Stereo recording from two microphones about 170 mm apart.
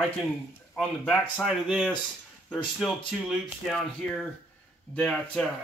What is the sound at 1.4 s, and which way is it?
Speech, 5° right (ahead or behind).